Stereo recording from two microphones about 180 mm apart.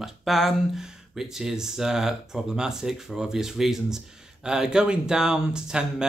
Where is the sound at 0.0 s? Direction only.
Centre (ahead or behind).